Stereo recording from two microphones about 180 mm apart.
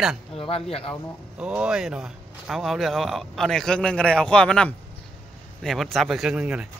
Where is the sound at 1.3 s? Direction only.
5° right (ahead or behind).